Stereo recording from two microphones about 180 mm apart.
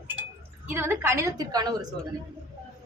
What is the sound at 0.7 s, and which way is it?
A woman's voice, 10° right (ahead or behind).